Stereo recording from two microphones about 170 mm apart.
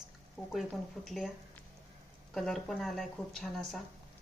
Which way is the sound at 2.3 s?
Centre (ahead or behind).